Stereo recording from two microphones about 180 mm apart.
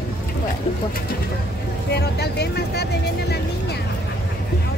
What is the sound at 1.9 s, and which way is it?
Speech, 65° left (ahead or behind).